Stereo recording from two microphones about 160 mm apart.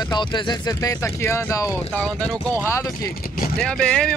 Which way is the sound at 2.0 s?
5° left (ahead or behind).